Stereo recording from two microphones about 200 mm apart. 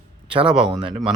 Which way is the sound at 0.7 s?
25° right (ahead or behind).